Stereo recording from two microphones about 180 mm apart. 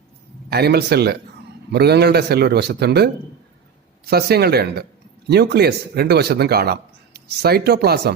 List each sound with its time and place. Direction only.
0.5 s speech: 65° right (ahead or behind)